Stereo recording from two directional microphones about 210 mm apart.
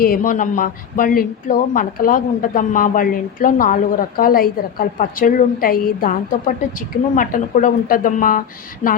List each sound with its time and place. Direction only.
0.0 s speech: 40° left (ahead or behind)